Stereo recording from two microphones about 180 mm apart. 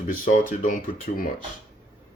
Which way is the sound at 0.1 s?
50° left (ahead or behind).